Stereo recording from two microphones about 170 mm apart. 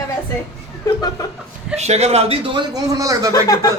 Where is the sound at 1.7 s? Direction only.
40° right (ahead or behind); by 3.3 s 20° right (ahead or behind).